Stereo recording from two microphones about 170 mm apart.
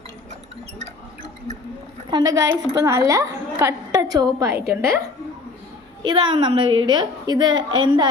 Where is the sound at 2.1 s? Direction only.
20° right (ahead or behind).